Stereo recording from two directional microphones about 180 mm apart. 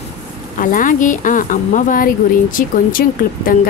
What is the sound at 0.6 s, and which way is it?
Speech, 50° left (ahead or behind).